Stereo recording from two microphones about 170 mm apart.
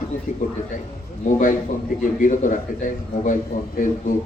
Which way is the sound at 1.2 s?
50° left (ahead or behind).